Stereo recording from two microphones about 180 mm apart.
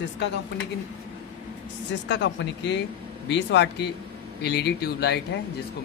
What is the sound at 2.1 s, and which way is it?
Speech, 80° left.